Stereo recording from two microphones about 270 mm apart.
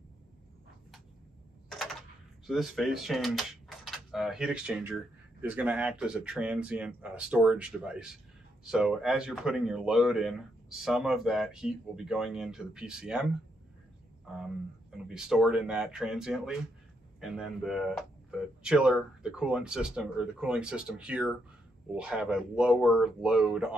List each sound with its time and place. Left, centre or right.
2.4 s speech: centre